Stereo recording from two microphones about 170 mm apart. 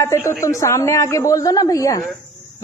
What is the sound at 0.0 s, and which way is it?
A woman's voice, 15° left (ahead or behind).